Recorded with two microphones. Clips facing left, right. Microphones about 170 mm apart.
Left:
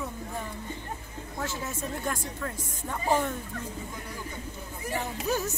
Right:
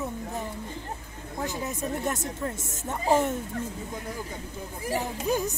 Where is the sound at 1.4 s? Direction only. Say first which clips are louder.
Right 3 dB; 15° right (ahead or behind).